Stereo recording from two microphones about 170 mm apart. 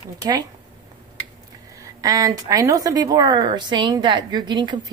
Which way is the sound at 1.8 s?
20° right (ahead or behind).